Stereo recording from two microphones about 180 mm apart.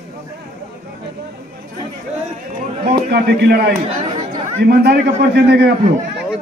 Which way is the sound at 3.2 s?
65° right (ahead or behind).